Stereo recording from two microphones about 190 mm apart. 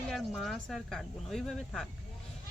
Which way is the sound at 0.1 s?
Centre (ahead or behind).